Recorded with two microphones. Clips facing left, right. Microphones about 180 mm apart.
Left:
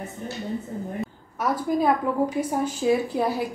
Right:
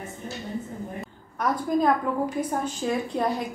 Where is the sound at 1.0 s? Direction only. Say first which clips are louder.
Right 1 dB; 5° left (ahead or behind).